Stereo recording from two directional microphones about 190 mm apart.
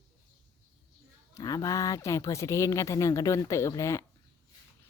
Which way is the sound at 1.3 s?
20° left (ahead or behind).